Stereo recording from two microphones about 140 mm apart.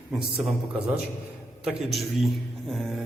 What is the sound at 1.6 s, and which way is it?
A man's voice, 5° right (ahead or behind).